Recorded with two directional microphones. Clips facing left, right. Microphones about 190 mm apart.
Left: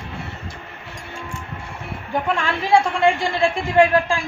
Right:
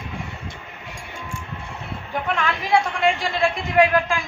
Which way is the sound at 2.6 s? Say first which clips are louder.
Left 5 dB; 30° left (ahead or behind).